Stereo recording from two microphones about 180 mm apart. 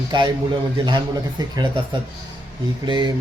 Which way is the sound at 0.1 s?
25° right (ahead or behind).